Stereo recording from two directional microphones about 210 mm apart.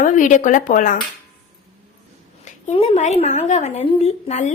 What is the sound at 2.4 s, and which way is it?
A woman's voice, 30° left (ahead or behind).